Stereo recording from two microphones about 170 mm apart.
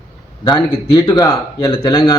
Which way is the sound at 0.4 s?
25° left (ahead or behind).